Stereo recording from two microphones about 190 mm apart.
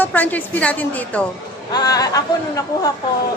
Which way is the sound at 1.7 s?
20° left (ahead or behind).